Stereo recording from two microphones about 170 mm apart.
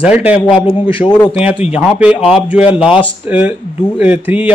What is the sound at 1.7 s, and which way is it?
A man's voice, 5° right (ahead or behind).